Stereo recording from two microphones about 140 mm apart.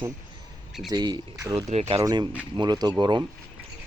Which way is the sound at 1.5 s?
45° right (ahead or behind).